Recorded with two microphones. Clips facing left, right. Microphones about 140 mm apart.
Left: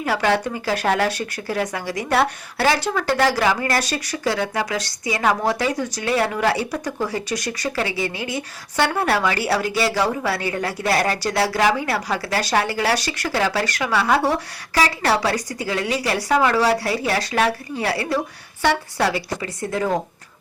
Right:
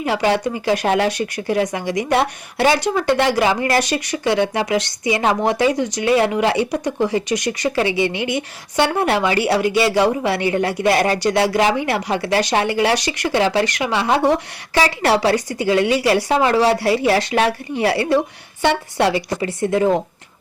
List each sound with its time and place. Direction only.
0.0 s speech: 15° right (ahead or behind)